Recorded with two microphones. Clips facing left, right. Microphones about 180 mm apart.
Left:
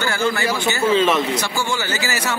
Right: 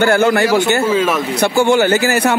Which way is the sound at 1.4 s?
60° right (ahead or behind).